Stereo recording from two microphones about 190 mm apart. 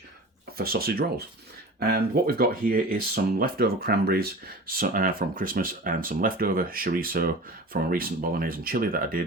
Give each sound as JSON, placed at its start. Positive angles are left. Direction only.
{"t": 0.5, "sound": "speech", "side_deg": -55}